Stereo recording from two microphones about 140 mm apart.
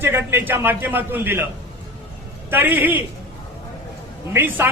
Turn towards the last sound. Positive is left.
turn(degrees=-15)  # may be behind; listen again after turning